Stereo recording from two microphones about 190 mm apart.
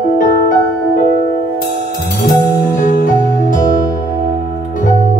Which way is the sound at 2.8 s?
45° left (ahead or behind).